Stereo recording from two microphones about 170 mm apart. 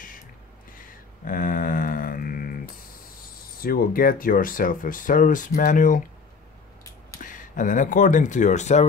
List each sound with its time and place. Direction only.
0.7 s a sound: 55° left (ahead or behind)
3.6 s speech: 60° left (ahead or behind)
7.2 s speech: 50° left (ahead or behind)